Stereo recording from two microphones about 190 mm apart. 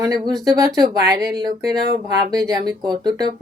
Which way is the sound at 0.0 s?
20° right (ahead or behind).